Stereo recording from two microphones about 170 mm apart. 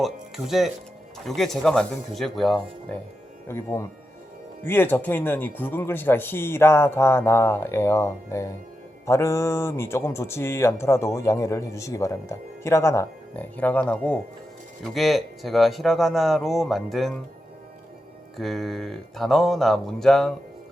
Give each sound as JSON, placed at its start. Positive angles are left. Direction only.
{"t": 0.0, "sound": "speech", "side_deg": 0}
{"t": 3.5, "sound": "speech", "side_deg": 15}
{"t": 18.3, "sound": "speech", "side_deg": 0}